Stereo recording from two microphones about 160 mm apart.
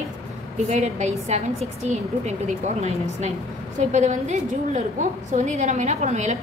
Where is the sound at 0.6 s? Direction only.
45° right (ahead or behind).